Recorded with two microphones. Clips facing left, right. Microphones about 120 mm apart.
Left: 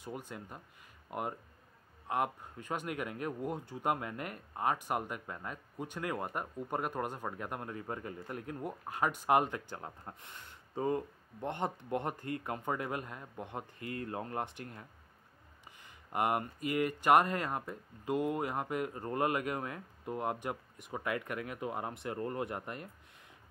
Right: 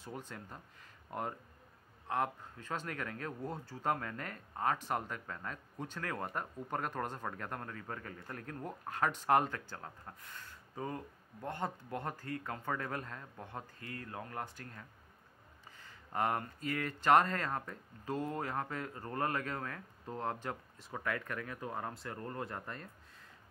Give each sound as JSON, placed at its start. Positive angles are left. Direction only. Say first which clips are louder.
{"t": 0.0, "sound": "speech", "louder": "left 3 dB", "side_deg": 15}
{"t": 2.0, "sound": "speech", "louder": "left 2 dB", "side_deg": 15}